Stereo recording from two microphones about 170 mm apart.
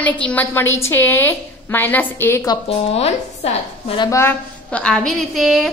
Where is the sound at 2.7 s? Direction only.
40° left (ahead or behind).